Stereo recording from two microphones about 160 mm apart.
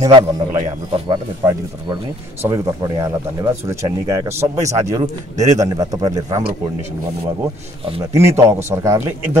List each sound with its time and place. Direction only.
0.1 s speech: 30° right (ahead or behind)
8.0 s a man's voice: 20° right (ahead or behind)